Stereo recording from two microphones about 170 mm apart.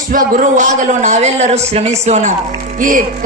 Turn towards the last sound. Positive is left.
turn(degrees=-50)  # may be behind; listen again after turning